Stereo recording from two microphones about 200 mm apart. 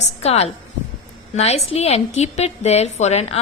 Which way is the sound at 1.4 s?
30° left (ahead or behind).